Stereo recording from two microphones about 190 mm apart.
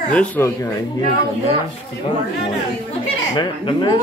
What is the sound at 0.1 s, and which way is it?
Speech, 5° left (ahead or behind).